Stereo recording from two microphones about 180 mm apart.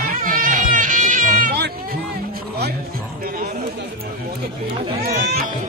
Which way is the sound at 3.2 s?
55° right (ahead or behind).